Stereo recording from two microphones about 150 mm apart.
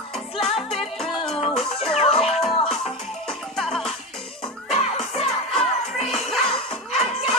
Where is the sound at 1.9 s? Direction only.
45° left (ahead or behind).